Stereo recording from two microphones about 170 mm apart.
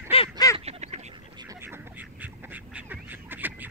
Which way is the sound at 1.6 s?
10° right (ahead or behind).